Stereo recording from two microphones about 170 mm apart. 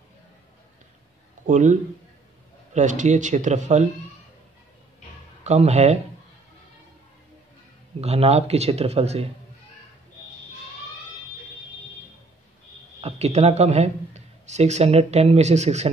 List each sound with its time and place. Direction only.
1.4 s a man's voice: 45° right (ahead or behind)
5.4 s speech: 40° right (ahead or behind)
8.0 s speech: 40° right (ahead or behind)
13.0 s speech: 40° right (ahead or behind)